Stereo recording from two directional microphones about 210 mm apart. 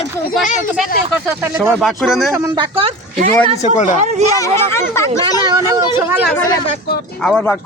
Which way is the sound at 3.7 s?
35° left (ahead or behind).